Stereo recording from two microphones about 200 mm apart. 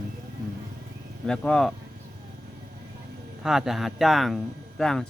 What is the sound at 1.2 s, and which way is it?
Speech, 5° left (ahead or behind).